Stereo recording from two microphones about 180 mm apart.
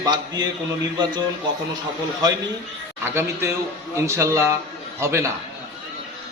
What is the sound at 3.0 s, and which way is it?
A man's voice, 15° right (ahead or behind).